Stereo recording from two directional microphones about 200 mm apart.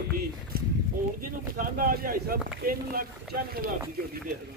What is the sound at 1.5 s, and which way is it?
Speech, 45° right (ahead or behind).